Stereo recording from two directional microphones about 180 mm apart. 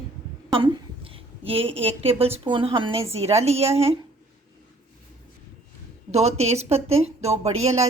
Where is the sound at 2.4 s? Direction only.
30° right (ahead or behind).